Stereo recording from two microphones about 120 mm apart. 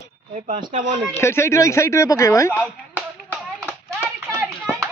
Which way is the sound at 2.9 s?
15° right (ahead or behind).